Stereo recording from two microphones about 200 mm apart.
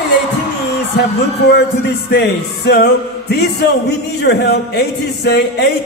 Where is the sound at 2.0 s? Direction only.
55° left (ahead or behind).